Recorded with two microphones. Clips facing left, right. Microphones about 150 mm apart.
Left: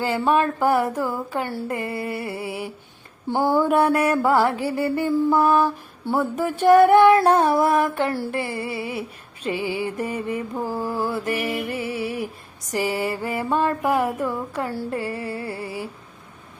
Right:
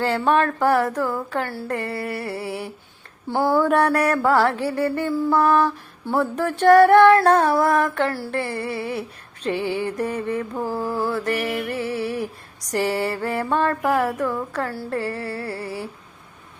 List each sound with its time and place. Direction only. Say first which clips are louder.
0.0 s speech: right 1 dB; 5° left (ahead or behind)
4.1 s speech: even; 20° left (ahead or behind)
7.4 s music: even; 20° left (ahead or behind)
8.0 s speech: even; 15° left (ahead or behind)
8.4 s a sound: right 1 dB; 5° left (ahead or behind)
10.0 s speech: right 2 dB; 10° left (ahead or behind)
11.3 s music: right 1 dB; 20° left (ahead or behind)
11.8 s a sound: right 2 dB; 5° left (ahead or behind)
13.2 s speech: even; 10° left (ahead or behind)
13.8 s music: right 1 dB; 20° left (ahead or behind)
14.5 s speech: even; 15° left (ahead or behind)
14.8 s music: right 1 dB; 15° left (ahead or behind)